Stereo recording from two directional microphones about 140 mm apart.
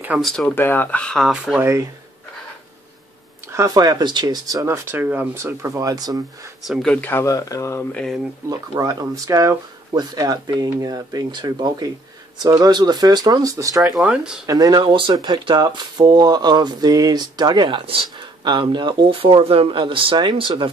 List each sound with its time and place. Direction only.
0.1 s speech: 5° right (ahead or behind)
0.6 s speech: 15° left (ahead or behind); by 1.7 s 5° right (ahead or behind)
3.5 s speech: 25° right (ahead or behind)
4.9 s speech: 15° right (ahead or behind)
6.7 s speech: 5° left (ahead or behind); by 7.8 s 20° left (ahead or behind)
7.9 s speech: 5° left (ahead or behind)
8.5 s speech: 25° right (ahead or behind)
13.9 s speech: 5° right (ahead or behind)
14.4 s speech: 25° right (ahead or behind)